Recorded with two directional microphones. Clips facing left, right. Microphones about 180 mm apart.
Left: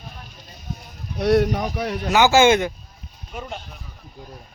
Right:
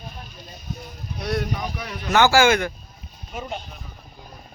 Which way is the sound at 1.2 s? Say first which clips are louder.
Left 9 dB; 70° left (ahead or behind).